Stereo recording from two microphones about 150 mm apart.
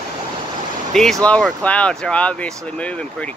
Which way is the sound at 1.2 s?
10° left (ahead or behind).